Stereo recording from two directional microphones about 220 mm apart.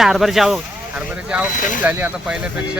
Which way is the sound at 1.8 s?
10° right (ahead or behind).